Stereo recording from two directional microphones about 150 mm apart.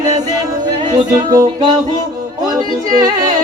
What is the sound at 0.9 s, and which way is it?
Music, 25° right (ahead or behind).